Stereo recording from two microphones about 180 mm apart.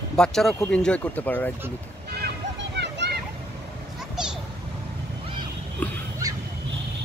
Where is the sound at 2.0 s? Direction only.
65° right (ahead or behind).